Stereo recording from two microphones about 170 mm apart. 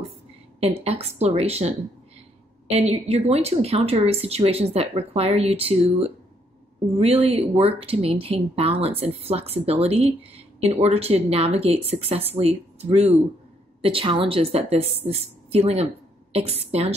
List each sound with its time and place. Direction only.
0.6 s speech: 35° right (ahead or behind)